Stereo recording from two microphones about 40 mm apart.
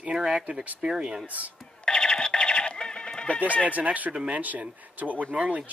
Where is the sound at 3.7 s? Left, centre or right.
Right.